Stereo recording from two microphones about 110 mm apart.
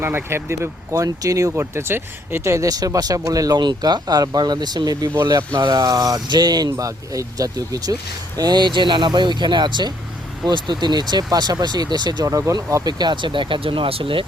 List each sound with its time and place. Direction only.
0.0 s speech: 20° right (ahead or behind); by 14.3 s 55° right (ahead or behind)